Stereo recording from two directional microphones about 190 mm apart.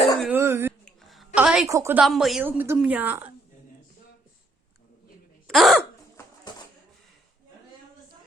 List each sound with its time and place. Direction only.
0.2 s cough: 10° right (ahead or behind)
0.9 s a sound: centre (ahead or behind)
1.4 s a woman's voice: 5° right (ahead or behind)
1.6 s a woman's voice: 15° right (ahead or behind)
2.0 s a woman's voice: centre (ahead or behind)
5.5 s speech: centre (ahead or behind)
6.5 s a sound: 25° left (ahead or behind)